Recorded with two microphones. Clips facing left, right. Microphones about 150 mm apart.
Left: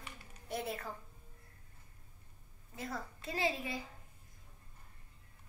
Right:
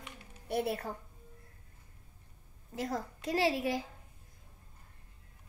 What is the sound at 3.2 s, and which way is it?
Speech, 85° right.